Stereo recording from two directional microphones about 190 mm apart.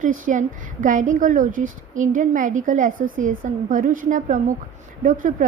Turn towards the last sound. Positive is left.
turn(degrees=-45)  # may be behind; listen again after turning